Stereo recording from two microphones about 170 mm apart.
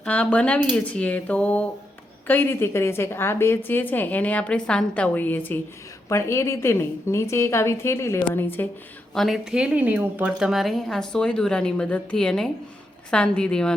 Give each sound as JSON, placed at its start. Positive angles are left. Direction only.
{"t": 0.0, "sound": "a woman's voice", "side_deg": 10}
{"t": 9.1, "sound": "a woman's voice", "side_deg": 0}